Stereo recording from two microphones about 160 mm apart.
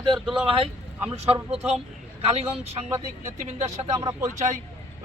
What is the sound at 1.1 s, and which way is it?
A man's voice, 40° right (ahead or behind).